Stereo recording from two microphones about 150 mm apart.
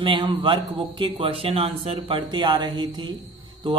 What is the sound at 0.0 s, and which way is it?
A man's voice, 30° right (ahead or behind).